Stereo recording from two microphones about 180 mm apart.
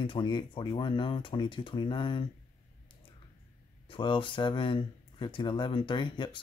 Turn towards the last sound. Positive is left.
turn(degrees=25)  # may be behind; listen again after turning